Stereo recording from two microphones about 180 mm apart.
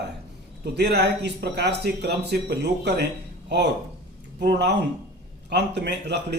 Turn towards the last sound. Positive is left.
turn(degrees=-70)  # may be behind; listen again after turning